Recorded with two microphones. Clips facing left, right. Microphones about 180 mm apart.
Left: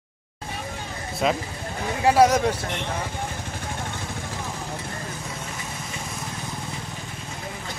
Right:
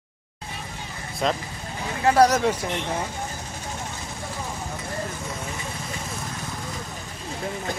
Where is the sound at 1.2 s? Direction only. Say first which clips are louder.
Left 1 dB; 5° left (ahead or behind).